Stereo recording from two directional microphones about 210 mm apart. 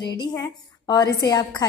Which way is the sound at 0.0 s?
20° left (ahead or behind).